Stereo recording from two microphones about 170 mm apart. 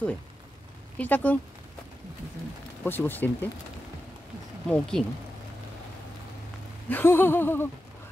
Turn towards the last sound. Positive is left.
turn(degrees=10)  # may be behind; listen again after turning